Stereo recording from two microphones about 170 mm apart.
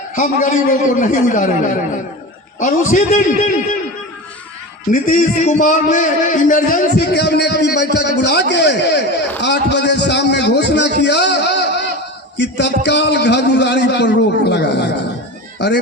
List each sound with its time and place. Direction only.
0.2 s a man's voice: 50° left (ahead or behind)
4.9 s a man's voice: 50° left (ahead or behind); by 9.0 s 85° left
9.4 s a sound: 85° left
12.4 s a man's voice: 90° left